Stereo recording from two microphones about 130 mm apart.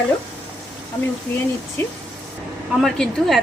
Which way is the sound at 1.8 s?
20° left (ahead or behind).